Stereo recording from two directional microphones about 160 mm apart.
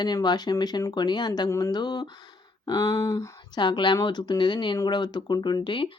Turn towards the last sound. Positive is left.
turn(degrees=30)  # may be behind; listen again after turning